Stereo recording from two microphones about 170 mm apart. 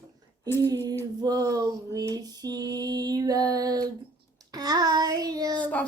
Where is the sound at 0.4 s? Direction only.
15° left (ahead or behind).